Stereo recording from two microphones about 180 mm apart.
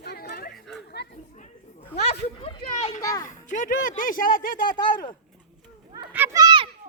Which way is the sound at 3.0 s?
20° left (ahead or behind).